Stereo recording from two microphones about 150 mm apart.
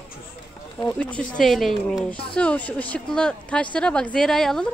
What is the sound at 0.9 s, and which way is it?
Speech, 10° left (ahead or behind).